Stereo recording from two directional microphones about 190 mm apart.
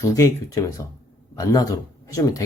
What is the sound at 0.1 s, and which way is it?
Speech, 15° left (ahead or behind).